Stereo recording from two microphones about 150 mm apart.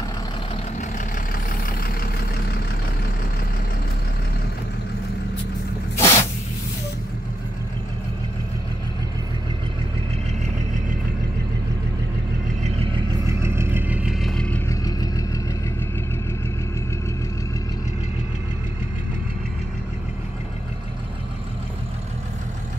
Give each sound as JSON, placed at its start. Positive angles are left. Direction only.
{"t": 0.7, "sound": "vehicle", "side_deg": 65}
{"t": 5.9, "sound": "spray", "side_deg": 20}
{"t": 13.2, "sound": "vehicle", "side_deg": -20}
{"t": 14.2, "sound": "vehicle", "side_deg": 5}
{"t": 14.7, "sound": "vehicle", "side_deg": 25}